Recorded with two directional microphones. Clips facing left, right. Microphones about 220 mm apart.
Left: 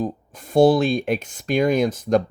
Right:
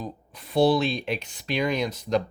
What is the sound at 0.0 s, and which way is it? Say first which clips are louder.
Speech: left 10 dB; 45° left (ahead or behind).